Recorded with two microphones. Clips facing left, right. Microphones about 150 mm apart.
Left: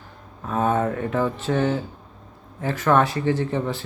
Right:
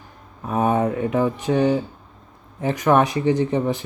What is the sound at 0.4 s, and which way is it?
Speech, 15° right (ahead or behind).